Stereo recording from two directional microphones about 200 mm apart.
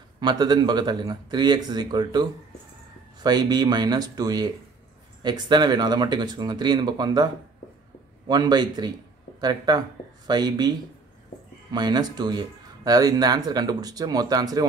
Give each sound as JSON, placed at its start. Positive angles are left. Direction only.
{"t": 0.2, "sound": "speech", "side_deg": -20}
{"t": 8.3, "sound": "speech", "side_deg": -20}